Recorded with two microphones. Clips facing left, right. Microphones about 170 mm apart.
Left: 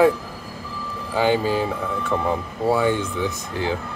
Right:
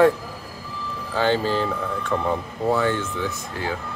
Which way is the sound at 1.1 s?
10° left (ahead or behind).